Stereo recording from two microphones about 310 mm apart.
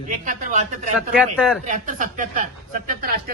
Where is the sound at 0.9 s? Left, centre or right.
Centre.